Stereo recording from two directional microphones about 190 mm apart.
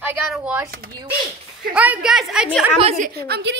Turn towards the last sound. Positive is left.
turn(degrees=-65)  # may be behind; listen again after turning